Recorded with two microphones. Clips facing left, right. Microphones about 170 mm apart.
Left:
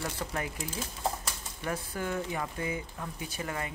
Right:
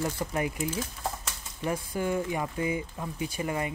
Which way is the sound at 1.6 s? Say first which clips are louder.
Right 5 dB; 10° right (ahead or behind).